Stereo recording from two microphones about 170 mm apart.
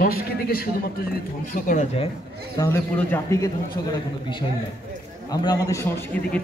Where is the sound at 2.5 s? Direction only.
20° left (ahead or behind).